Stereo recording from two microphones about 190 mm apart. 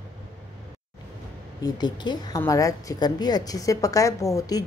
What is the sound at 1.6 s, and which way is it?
A woman's voice, 20° left (ahead or behind).